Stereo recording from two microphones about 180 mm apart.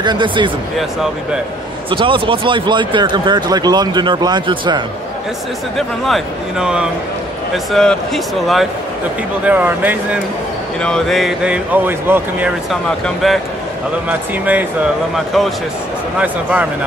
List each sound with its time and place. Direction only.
0.0 s speech: 25° right (ahead or behind)
1.9 s speech: 30° right (ahead or behind)
5.8 s speech: centre (ahead or behind)
9.5 s speech: 10° right (ahead or behind)
10.8 s speech: 5° left (ahead or behind)
13.0 s speech: centre (ahead or behind)